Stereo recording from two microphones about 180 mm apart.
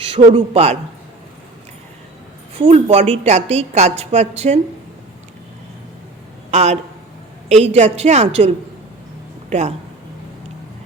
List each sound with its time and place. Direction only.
0.0 s a man's voice: 30° right (ahead or behind)
2.6 s a woman's voice: 35° right (ahead or behind)
6.5 s a man's voice: 40° right (ahead or behind)
9.5 s speech: 40° right (ahead or behind)